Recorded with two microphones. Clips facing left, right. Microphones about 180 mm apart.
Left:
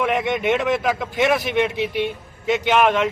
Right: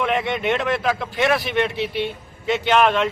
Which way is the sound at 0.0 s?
10° left (ahead or behind).